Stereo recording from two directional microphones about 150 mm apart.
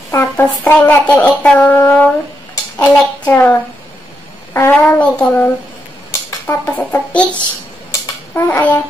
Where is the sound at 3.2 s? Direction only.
15° left (ahead or behind).